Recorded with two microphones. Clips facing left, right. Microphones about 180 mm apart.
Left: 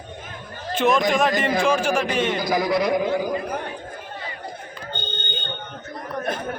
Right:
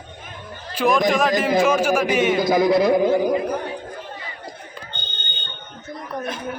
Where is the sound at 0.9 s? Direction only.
Centre (ahead or behind).